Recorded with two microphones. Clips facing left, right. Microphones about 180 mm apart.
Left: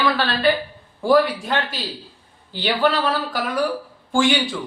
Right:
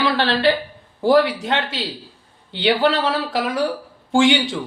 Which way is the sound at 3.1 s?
25° right (ahead or behind).